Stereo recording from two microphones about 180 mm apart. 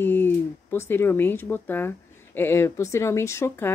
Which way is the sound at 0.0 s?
10° left (ahead or behind).